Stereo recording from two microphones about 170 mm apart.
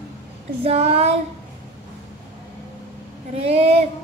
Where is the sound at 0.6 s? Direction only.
35° right (ahead or behind).